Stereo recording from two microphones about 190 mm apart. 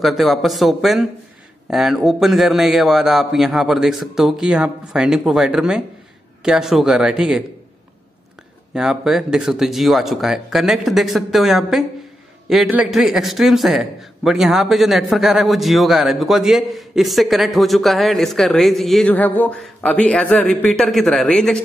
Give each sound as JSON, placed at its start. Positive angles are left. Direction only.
{"t": 0.0, "sound": "a man's voice", "side_deg": 0}
{"t": 8.7, "sound": "a man's voice", "side_deg": -5}